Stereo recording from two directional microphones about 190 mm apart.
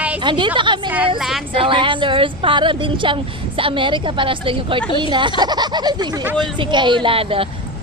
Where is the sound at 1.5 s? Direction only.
25° right (ahead or behind).